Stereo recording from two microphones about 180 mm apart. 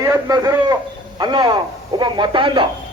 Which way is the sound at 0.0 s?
20° right (ahead or behind).